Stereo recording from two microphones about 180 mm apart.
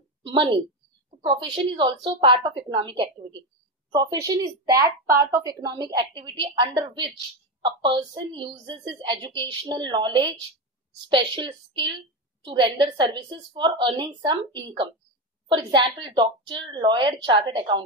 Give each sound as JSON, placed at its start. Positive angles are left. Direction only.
{"t": 0.2, "sound": "a woman's voice", "side_deg": -25}